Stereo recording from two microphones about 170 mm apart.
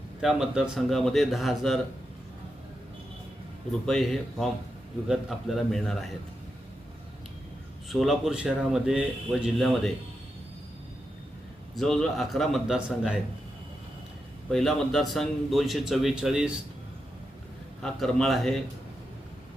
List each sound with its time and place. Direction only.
0.2 s speech: 5° right (ahead or behind)
3.8 s speech: centre (ahead or behind)
7.9 s speech: centre (ahead or behind)
11.7 s speech: centre (ahead or behind)
14.5 s speech: 5° left (ahead or behind)
17.8 s speech: centre (ahead or behind)